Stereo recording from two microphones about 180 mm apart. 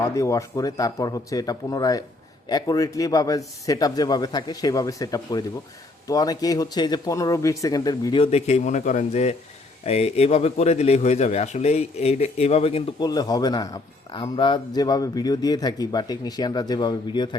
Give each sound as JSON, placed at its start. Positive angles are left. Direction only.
{"t": 0.0, "sound": "a man's voice", "side_deg": 15}
{"t": 13.1, "sound": "speech", "side_deg": 20}